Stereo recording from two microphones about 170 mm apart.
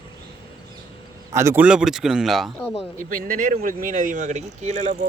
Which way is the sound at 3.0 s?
55° right (ahead or behind).